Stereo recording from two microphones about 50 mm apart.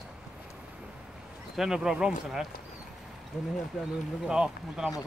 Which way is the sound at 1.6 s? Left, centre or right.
Centre.